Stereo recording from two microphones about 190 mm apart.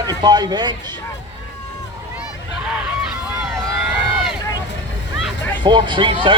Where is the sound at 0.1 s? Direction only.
20° right (ahead or behind).